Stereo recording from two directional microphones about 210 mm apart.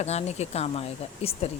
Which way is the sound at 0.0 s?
30° left (ahead or behind).